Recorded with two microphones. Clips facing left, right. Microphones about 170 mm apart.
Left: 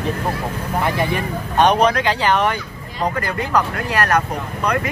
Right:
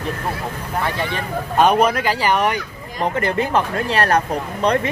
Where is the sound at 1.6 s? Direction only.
5° right (ahead or behind).